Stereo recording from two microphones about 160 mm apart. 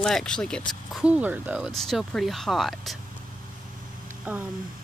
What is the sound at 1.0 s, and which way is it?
Speech, 10° right (ahead or behind).